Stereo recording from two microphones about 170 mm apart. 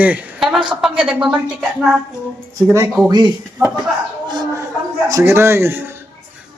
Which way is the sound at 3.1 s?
25° right (ahead or behind).